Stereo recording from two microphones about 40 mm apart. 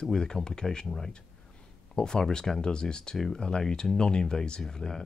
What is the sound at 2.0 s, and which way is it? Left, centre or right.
Speech, centre.